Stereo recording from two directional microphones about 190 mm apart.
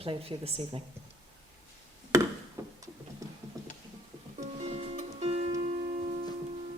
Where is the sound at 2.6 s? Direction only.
15° right (ahead or behind).